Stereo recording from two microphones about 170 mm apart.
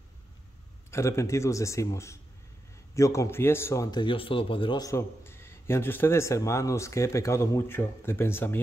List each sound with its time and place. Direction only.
0.9 s a man's voice: 15° left (ahead or behind)